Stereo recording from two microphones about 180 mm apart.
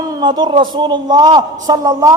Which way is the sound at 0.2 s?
25° right (ahead or behind).